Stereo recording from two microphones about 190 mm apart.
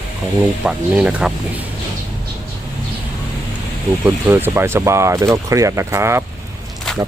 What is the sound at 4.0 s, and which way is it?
Speech, 10° right (ahead or behind).